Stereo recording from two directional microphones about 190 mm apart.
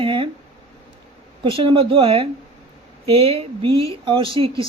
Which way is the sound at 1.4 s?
25° right (ahead or behind).